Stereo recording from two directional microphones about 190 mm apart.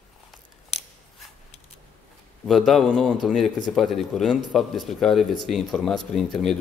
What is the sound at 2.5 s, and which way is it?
Speech, centre (ahead or behind).